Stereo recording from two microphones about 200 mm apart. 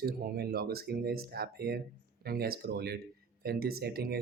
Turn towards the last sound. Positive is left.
turn(degrees=-50)  # may be behind; listen again after turning